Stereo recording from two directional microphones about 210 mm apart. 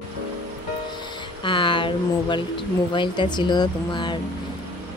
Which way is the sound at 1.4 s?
25° left (ahead or behind).